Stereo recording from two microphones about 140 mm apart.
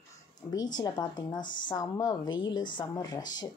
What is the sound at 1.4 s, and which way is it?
Speech, 70° left (ahead or behind).